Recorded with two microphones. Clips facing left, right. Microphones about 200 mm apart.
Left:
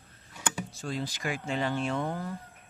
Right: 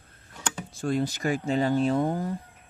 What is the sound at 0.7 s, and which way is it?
Speech, 55° right (ahead or behind).